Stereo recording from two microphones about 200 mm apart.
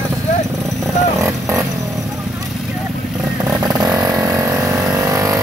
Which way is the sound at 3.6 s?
20° right (ahead or behind).